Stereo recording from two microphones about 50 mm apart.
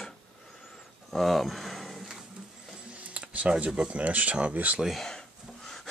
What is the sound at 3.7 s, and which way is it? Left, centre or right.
Speech, right.